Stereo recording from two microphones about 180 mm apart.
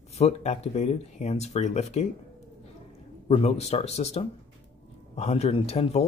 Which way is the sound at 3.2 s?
35° left (ahead or behind).